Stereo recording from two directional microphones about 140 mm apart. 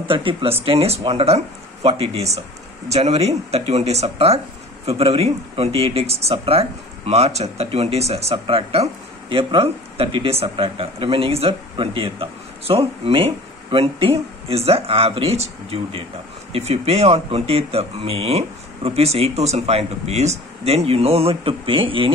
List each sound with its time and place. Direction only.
0.1 s speech: 40° right (ahead or behind)